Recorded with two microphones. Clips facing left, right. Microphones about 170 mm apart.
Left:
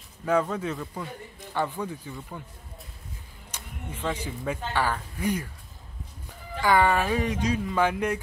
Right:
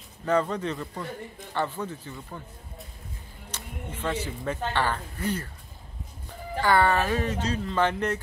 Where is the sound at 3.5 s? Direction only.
10° left (ahead or behind).